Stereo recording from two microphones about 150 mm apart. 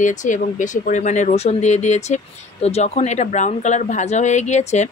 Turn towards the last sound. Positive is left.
turn(degrees=50)  # may be behind; listen again after turning